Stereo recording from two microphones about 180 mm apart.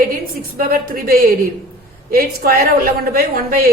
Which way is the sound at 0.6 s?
55° right (ahead or behind).